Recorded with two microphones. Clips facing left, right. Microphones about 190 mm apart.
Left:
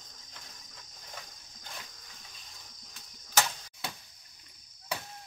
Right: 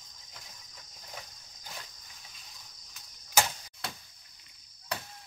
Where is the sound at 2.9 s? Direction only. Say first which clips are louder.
Right 1 dB; 10° right (ahead or behind).